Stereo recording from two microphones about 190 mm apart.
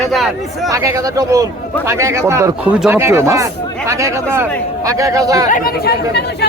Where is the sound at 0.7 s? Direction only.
15° right (ahead or behind).